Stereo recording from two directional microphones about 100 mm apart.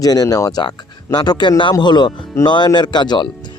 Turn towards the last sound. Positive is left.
turn(degrees=50)  # may be behind; listen again after turning